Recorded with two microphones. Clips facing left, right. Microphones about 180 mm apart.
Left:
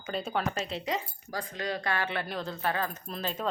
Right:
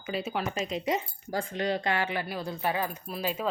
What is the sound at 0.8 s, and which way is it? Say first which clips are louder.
Speech: right 3 dB; 25° right (ahead or behind).